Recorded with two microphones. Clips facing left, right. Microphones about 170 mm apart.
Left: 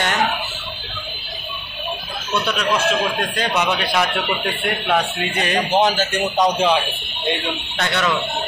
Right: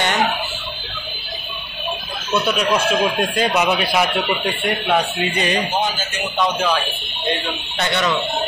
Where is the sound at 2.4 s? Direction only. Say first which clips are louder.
Right 1 dB; 10° right (ahead or behind).